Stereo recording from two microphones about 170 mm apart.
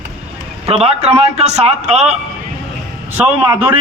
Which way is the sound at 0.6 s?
40° right (ahead or behind).